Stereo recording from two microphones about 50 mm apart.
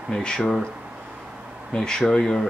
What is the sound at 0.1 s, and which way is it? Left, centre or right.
Speech, centre.